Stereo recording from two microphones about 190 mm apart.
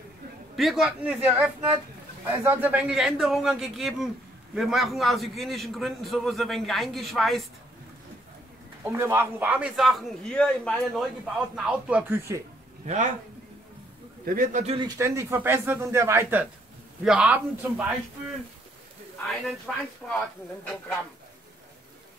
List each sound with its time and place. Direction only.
0.6 s a man's voice: centre (ahead or behind)
8.8 s a man's voice: 10° right (ahead or behind)
12.8 s a man's voice: 40° right (ahead or behind)
14.2 s a man's voice: 45° right (ahead or behind)
14.8 s a man's voice: 15° right (ahead or behind)
19.2 s a man's voice: centre (ahead or behind)